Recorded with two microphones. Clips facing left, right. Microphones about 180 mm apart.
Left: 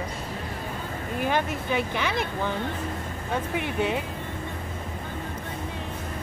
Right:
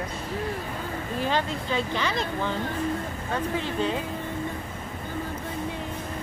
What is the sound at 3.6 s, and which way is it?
Speech, 15° left (ahead or behind).